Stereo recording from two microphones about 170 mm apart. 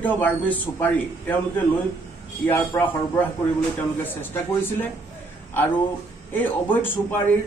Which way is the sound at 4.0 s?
10° left (ahead or behind).